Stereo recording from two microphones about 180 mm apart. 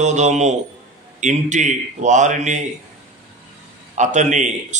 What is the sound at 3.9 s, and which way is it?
Speech, 40° right (ahead or behind).